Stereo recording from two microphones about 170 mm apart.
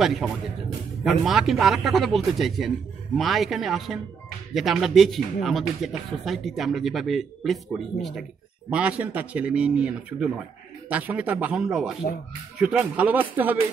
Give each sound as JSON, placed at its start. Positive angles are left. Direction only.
{"t": 0.0, "sound": "speech", "side_deg": 0}